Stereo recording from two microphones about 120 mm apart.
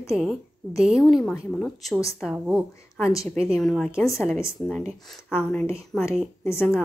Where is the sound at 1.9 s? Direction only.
25° left (ahead or behind).